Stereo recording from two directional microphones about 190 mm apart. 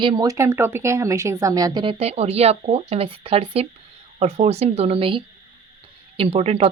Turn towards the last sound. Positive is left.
turn(degrees=-35)  # may be behind; listen again after turning